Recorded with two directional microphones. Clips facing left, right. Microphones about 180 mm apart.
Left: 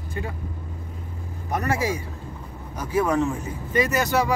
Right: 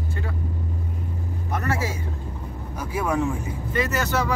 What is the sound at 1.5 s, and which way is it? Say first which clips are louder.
Speech: left 3 dB; 15° left (ahead or behind).